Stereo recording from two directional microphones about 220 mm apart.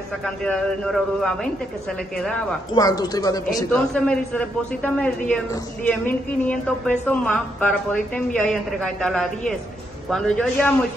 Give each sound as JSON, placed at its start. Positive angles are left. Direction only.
{"t": 0.2, "sound": "a man's voice", "side_deg": 5}
{"t": 2.7, "sound": "a man's voice", "side_deg": 15}
{"t": 3.7, "sound": "a man's voice", "side_deg": 5}